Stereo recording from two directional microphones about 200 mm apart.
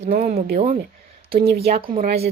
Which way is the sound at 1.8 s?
25° right (ahead or behind).